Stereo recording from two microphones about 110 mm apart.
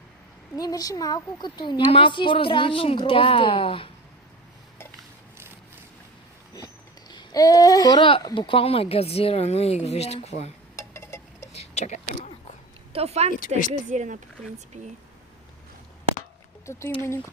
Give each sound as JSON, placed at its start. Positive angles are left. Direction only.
{"t": 0.5, "sound": "a woman's voice", "side_deg": 35}
{"t": 7.1, "sound": "babbling", "side_deg": 35}
{"t": 8.2, "sound": "a woman's voice", "side_deg": 40}
{"t": 8.4, "sound": "speech", "side_deg": 60}
{"t": 10.8, "sound": "a sound", "side_deg": 25}
{"t": 11.5, "sound": "a sound", "side_deg": 75}
{"t": 12.9, "sound": "a woman's voice", "side_deg": -70}
{"t": 16.6, "sound": "speech", "side_deg": 25}